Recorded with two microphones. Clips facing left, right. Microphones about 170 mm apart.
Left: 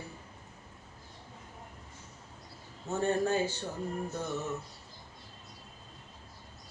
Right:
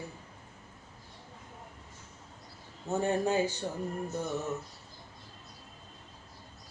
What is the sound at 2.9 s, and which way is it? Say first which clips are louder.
Mantra: right 1 dB; 15° right (ahead or behind).